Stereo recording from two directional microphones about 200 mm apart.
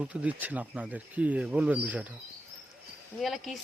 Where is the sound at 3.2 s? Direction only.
Centre (ahead or behind).